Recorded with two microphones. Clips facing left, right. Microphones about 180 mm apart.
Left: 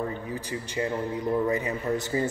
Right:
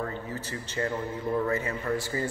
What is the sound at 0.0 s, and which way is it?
A man's voice, 15° left (ahead or behind).